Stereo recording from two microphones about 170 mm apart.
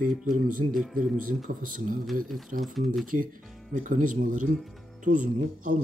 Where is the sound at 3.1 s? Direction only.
55° right (ahead or behind).